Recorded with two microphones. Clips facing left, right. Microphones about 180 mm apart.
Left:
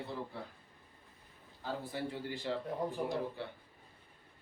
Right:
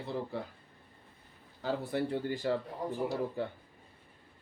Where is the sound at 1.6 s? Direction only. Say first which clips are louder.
Right 6 dB; 60° right (ahead or behind).